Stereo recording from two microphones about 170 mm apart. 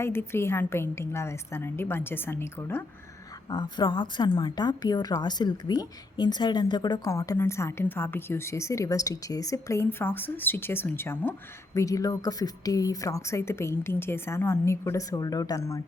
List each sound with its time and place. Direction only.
0.0 s a woman's voice: 15° left (ahead or behind)
3.5 s a woman's voice: 25° left (ahead or behind)